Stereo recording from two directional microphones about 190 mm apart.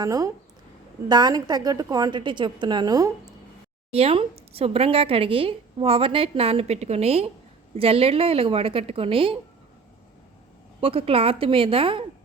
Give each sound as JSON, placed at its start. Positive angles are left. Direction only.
{"t": 0.0, "sound": "a woman's voice", "side_deg": -20}
{"t": 3.9, "sound": "a woman's voice", "side_deg": -30}
{"t": 10.8, "sound": "a woman's voice", "side_deg": -30}